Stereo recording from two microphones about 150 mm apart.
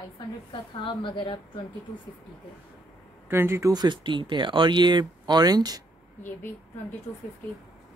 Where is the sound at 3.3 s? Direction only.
15° right (ahead or behind).